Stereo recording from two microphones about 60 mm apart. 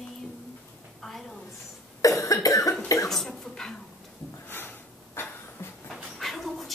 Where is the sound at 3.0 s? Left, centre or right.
Centre.